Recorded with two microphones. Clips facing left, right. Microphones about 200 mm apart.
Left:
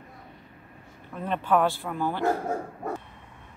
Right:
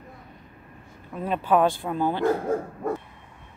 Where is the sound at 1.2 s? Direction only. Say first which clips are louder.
Right 2 dB; 10° right (ahead or behind).